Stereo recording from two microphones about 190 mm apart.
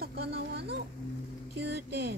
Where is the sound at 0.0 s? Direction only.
55° right (ahead or behind).